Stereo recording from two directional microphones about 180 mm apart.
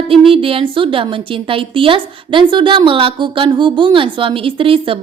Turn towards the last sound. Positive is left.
turn(degrees=-30)  # may be behind; listen again after turning